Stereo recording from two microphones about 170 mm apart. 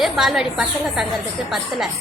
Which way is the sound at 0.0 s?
Centre (ahead or behind).